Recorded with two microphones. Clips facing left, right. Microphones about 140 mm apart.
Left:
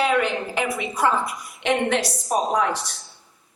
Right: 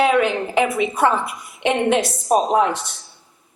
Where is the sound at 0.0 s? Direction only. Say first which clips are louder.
Right 4 dB; 20° right (ahead or behind).